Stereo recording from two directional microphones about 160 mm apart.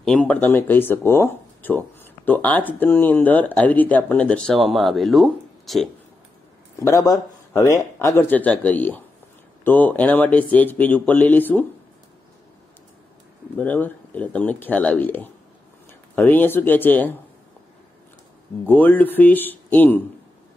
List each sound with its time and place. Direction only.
0.0 s speech: 5° left (ahead or behind)
6.8 s speech: 20° left (ahead or behind)
13.6 s speech: 10° left (ahead or behind)
18.7 s speech: 10° left (ahead or behind)